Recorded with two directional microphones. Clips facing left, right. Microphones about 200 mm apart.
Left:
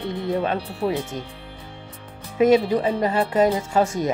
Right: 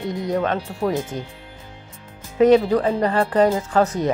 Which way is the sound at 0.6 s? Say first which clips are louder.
Right 1 dB; 45° right (ahead or behind).